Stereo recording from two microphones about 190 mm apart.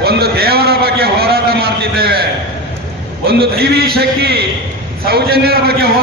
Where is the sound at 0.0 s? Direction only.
55° right (ahead or behind).